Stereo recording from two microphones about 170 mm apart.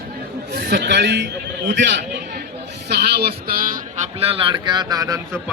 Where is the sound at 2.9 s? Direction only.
70° right (ahead or behind).